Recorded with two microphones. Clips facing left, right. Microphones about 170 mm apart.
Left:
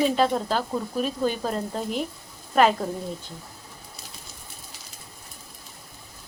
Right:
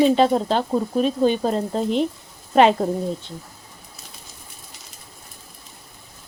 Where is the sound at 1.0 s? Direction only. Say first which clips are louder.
Right 7 dB; 5° left (ahead or behind).